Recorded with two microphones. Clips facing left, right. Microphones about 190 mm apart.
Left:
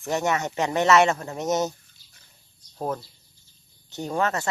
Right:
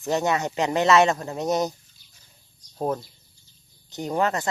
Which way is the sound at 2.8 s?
20° right (ahead or behind).